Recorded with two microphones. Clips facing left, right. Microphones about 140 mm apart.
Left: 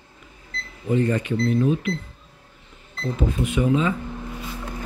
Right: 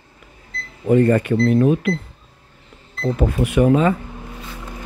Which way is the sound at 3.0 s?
65° right (ahead or behind).